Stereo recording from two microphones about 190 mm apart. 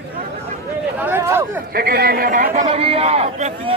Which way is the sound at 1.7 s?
55° right (ahead or behind).